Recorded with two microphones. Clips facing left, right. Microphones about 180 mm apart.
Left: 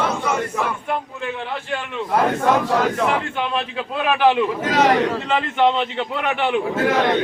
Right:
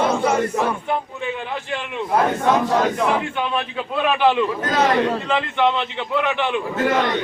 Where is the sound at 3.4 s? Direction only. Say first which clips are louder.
Even; centre (ahead or behind).